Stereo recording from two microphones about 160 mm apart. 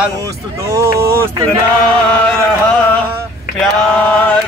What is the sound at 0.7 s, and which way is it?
Speech, 15° right (ahead or behind).